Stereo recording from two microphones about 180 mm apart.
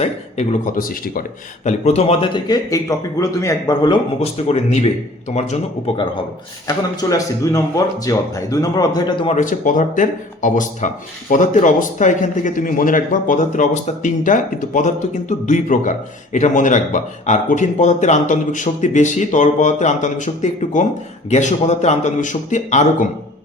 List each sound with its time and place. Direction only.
0.0 s a man's voice: 40° left (ahead or behind)
1.6 s speech: 35° left (ahead or behind); by 3.9 s 20° left (ahead or behind)
4.2 s a man's voice: 35° left (ahead or behind)
6.9 s speech: 20° left (ahead or behind)
9.3 s a man's voice: 45° left (ahead or behind)